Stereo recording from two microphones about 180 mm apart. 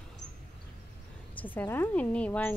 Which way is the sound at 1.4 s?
10° left (ahead or behind).